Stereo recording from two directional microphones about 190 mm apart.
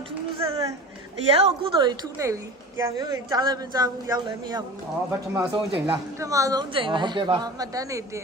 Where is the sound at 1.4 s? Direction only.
20° right (ahead or behind).